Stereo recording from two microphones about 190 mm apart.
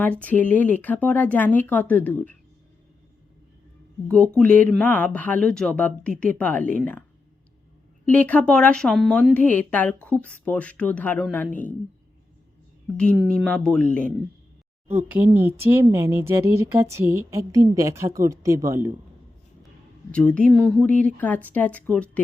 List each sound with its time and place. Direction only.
0.0 s a woman's voice: 10° left (ahead or behind)
4.4 s a woman's voice: 5° left (ahead or behind)
8.0 s a woman's voice: 10° left (ahead or behind)
13.3 s speech: 5° left (ahead or behind)
14.8 s speech: 10° right (ahead or behind)
20.1 s a woman's voice: 5° left (ahead or behind)